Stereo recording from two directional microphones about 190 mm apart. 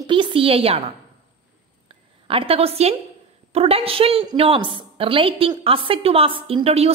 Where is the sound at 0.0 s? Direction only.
25° right (ahead or behind).